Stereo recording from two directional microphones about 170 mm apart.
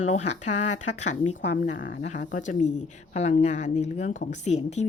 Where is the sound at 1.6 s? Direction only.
50° left (ahead or behind).